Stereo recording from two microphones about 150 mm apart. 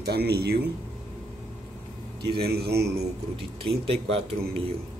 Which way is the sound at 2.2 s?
90° right.